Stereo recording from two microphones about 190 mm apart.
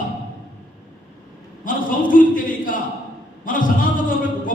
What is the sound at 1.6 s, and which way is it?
A man's voice, 45° left (ahead or behind).